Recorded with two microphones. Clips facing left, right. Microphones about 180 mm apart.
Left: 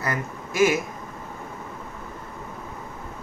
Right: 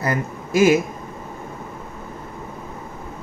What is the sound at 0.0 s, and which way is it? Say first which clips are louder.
Speech: right 5 dB; 30° right (ahead or behind).